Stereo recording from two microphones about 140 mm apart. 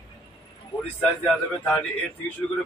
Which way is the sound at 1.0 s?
5° left (ahead or behind).